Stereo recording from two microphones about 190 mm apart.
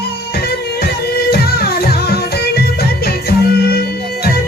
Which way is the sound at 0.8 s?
55° left (ahead or behind).